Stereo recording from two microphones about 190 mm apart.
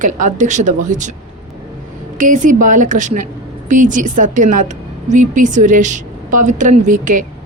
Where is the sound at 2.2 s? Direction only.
40° right (ahead or behind).